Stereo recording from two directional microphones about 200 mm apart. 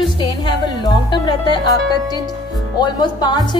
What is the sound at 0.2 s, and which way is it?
Speech, 20° left (ahead or behind).